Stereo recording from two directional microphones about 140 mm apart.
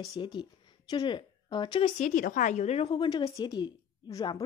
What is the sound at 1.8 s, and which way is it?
A woman's voice, 60° left (ahead or behind).